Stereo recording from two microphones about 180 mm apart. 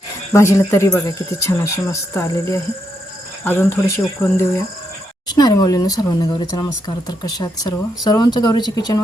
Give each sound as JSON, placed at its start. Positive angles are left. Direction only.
{"t": 0.3, "sound": "speech", "side_deg": 15}